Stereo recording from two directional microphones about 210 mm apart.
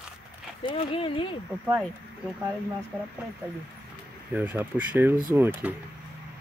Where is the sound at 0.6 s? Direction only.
25° left (ahead or behind).